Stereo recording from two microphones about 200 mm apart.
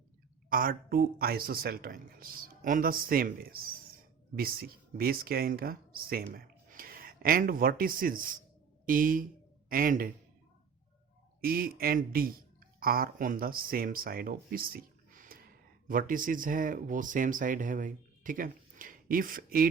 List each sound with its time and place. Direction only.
0.5 s a man's voice: 45° right (ahead or behind)
11.3 s speech: 45° right (ahead or behind)